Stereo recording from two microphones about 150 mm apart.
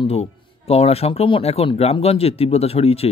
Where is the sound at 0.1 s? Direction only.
45° left (ahead or behind).